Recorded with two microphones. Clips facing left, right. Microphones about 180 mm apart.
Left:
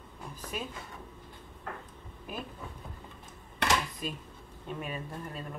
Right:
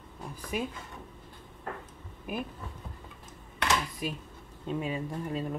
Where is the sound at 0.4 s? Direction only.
10° right (ahead or behind).